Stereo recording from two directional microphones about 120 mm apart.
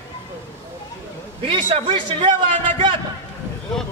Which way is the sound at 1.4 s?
45° right (ahead or behind).